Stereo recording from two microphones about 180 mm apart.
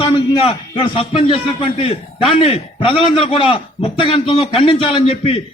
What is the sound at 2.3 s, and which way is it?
A man's voice, 30° left (ahead or behind).